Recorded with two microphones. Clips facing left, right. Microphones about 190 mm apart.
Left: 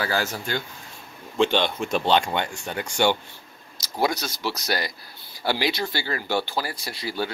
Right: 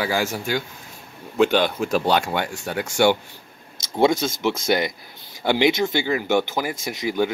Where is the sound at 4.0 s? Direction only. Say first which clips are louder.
Right 7 dB; 25° right (ahead or behind).